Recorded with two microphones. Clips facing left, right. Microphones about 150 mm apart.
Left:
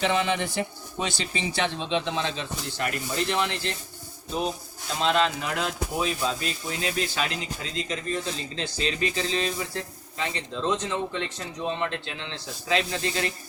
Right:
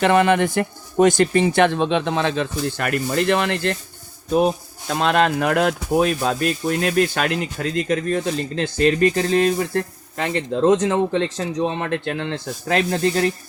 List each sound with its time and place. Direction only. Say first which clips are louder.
0.0 s speech: right 9 dB; 60° right (ahead or behind); by 11.2 s 80° right
11.3 s speech: right 7 dB; 90° right; by 13.3 s 50° right (ahead or behind)